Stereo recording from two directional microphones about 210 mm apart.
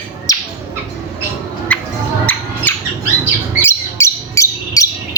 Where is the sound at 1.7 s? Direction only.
5° left (ahead or behind).